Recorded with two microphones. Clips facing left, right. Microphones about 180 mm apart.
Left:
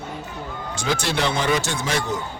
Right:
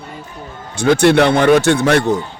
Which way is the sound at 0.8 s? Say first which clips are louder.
Right 13 dB; 60° right (ahead or behind).